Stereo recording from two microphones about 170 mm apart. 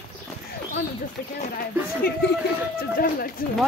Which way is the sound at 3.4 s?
60° left (ahead or behind).